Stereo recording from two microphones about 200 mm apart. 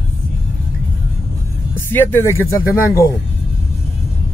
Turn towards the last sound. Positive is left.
turn(degrees=15)  # may be behind; listen again after turning